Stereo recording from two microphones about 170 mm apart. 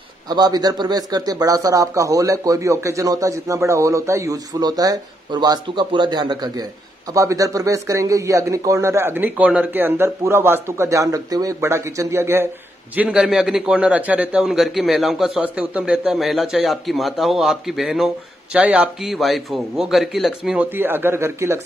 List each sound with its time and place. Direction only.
0.3 s a man's voice: 25° right (ahead or behind)